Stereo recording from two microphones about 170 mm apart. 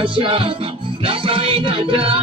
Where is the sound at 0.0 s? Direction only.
30° right (ahead or behind).